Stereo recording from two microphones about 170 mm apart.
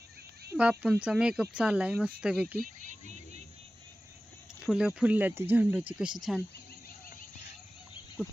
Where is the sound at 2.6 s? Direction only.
50° right (ahead or behind).